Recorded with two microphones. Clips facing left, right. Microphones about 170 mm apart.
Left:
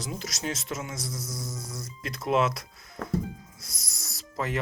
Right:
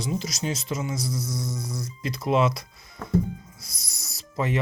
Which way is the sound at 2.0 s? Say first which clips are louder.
Right 3 dB; centre (ahead or behind).